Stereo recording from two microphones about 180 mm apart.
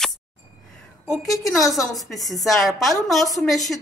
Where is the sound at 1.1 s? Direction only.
Centre (ahead or behind).